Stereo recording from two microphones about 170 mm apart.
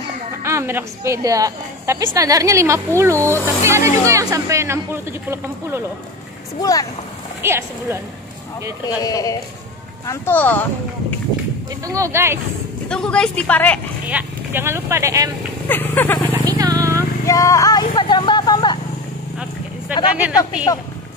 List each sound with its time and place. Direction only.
0.4 s a woman's voice: 15° right (ahead or behind)
6.6 s speech: 20° left (ahead or behind)
7.4 s speech: 15° right (ahead or behind)
9.0 s speech: 20° left (ahead or behind)
11.8 s speech: 20° right (ahead or behind)
12.8 s speech: 5° left (ahead or behind)
14.0 s speech: 10° right (ahead or behind)
15.7 s vehicle: 10° left (ahead or behind)
16.5 s vehicle: 20° right (ahead or behind)
17.3 s vehicle: 20° left (ahead or behind)
19.9 s speech: 10° right (ahead or behind)